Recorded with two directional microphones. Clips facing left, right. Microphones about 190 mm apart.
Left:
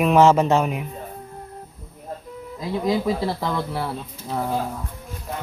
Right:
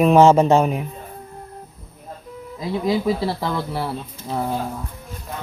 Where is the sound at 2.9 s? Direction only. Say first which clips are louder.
Right 2 dB; 5° right (ahead or behind).